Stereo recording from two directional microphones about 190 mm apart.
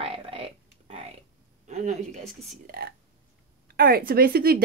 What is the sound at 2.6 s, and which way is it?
A woman's voice, 50° right (ahead or behind).